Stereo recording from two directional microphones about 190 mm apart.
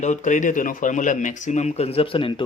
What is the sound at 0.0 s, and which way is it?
Speech, 40° left (ahead or behind).